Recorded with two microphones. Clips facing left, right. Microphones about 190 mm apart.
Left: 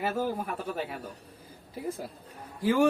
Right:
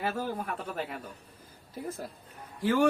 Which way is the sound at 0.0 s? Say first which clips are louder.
Left 3 dB; 5° left (ahead or behind).